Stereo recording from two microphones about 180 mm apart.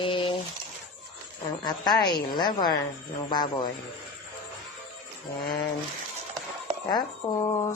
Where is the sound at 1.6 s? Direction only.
25° left (ahead or behind).